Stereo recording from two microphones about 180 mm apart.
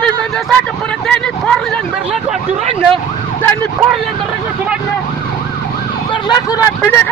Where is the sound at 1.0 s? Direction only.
5° left (ahead or behind).